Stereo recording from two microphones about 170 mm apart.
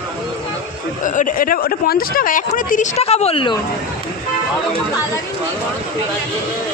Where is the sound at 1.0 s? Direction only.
50° left (ahead or behind); by 3.5 s 35° left (ahead or behind).